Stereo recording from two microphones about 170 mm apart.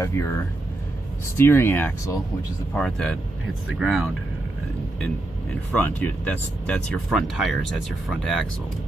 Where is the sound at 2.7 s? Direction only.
5° left (ahead or behind).